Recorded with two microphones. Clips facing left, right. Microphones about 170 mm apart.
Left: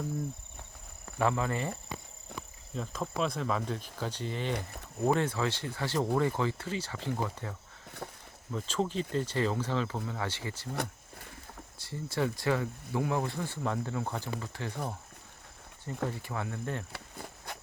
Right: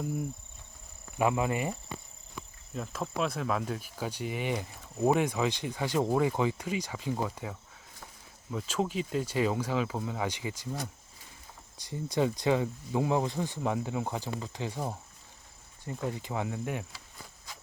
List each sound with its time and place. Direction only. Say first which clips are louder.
1.2 s speech: right 2 dB; 15° right (ahead or behind)
2.3 s insect: left 2 dB; 65° left (ahead or behind)
2.7 s speech: even; 5° right (ahead or behind)
8.5 s speech: right 1 dB; 5° right (ahead or behind)
11.8 s speech: right 3 dB; 15° right (ahead or behind)
16.0 s speech: right 3 dB; 15° right (ahead or behind)
16.9 s a sound: left 6 dB; 60° left (ahead or behind)